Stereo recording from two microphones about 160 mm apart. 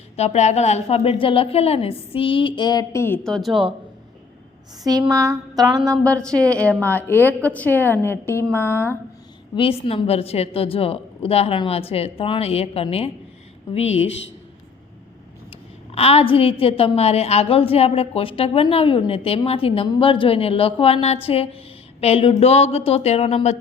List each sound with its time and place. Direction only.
0.2 s a woman's voice: 45° left (ahead or behind); by 3.2 s 15° left (ahead or behind)
3.2 s speech: centre (ahead or behind)
4.8 s a sound: 25° right (ahead or behind)
6.2 s a woman's voice: 5° left (ahead or behind)
9.8 s a woman's voice: 35° left (ahead or behind)
15.4 s a woman's voice: 40° left (ahead or behind)